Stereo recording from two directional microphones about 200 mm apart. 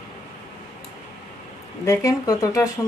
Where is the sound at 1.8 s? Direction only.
15° left (ahead or behind).